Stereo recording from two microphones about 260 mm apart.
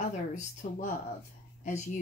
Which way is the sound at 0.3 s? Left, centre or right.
Left.